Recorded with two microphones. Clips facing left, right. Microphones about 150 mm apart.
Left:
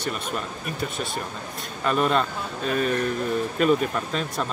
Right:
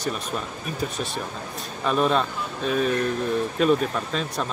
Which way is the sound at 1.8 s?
Centre (ahead or behind).